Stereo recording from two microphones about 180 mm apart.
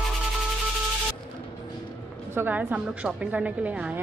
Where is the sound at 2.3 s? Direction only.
10° right (ahead or behind).